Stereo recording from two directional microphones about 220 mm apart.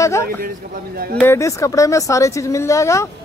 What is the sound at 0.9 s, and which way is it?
Speech, 45° right (ahead or behind).